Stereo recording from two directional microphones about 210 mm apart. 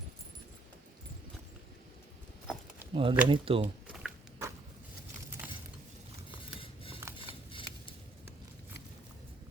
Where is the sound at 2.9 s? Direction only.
25° right (ahead or behind).